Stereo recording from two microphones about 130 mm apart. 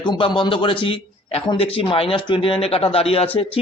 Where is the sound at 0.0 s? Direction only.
35° left (ahead or behind).